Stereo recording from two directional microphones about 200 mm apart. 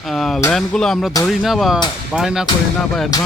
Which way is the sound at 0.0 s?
Centre (ahead or behind).